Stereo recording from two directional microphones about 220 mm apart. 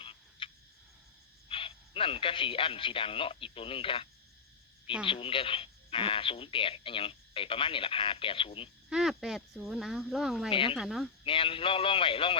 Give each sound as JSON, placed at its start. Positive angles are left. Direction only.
{"t": 0.0, "sound": "a sound", "side_deg": 25}
{"t": 1.5, "sound": "a man's voice", "side_deg": 25}
{"t": 8.9, "sound": "speech", "side_deg": 0}
{"t": 10.5, "sound": "speech", "side_deg": 25}
{"t": 10.8, "sound": "speech", "side_deg": 0}
{"t": 11.2, "sound": "speech", "side_deg": 25}